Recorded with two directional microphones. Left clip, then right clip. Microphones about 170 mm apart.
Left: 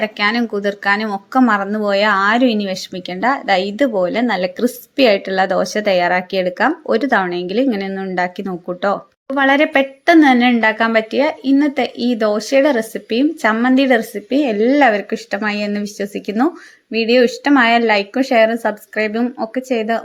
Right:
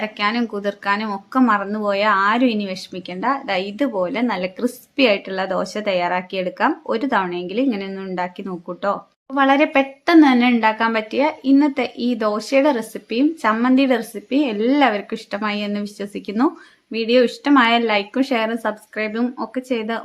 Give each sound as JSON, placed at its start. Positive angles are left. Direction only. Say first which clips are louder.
{"t": 0.0, "sound": "speech", "louder": "left 4 dB", "side_deg": 20}